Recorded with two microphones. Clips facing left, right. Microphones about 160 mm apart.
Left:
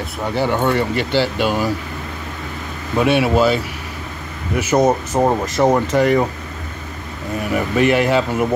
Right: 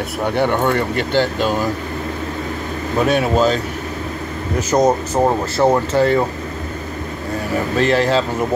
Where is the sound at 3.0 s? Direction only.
5° left (ahead or behind).